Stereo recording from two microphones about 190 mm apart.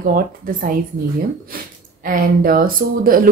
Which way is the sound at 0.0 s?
50° right (ahead or behind).